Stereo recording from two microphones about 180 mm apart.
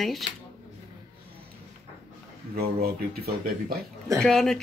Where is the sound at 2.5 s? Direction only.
60° right (ahead or behind).